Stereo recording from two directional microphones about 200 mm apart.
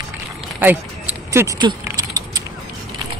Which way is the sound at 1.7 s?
15° right (ahead or behind).